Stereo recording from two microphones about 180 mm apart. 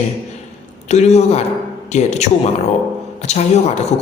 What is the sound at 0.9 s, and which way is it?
A man's voice, 40° left (ahead or behind).